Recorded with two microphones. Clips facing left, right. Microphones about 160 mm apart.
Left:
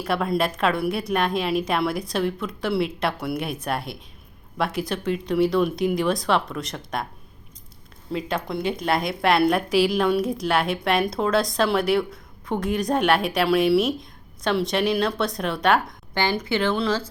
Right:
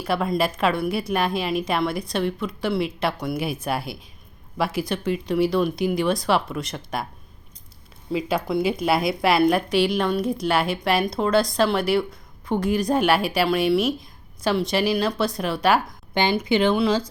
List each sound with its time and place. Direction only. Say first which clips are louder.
0.0 s a woman's voice: even; centre (ahead or behind)
8.1 s a woman's voice: right 4 dB; centre (ahead or behind)
16.1 s speech: right 3 dB; 15° right (ahead or behind)